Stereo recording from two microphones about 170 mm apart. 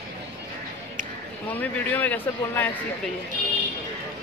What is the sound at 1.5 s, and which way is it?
Speech, 10° left (ahead or behind).